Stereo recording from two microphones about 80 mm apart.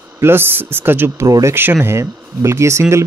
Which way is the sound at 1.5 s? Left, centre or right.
Right.